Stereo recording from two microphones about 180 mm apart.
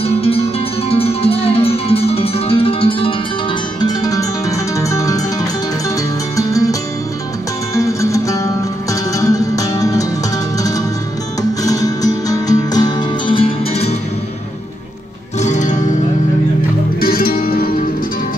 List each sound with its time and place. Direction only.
0.0 s music: 35° left (ahead or behind)
11.6 s music: 20° left (ahead or behind)
15.3 s music: 40° left (ahead or behind)
17.0 s music: 55° left (ahead or behind)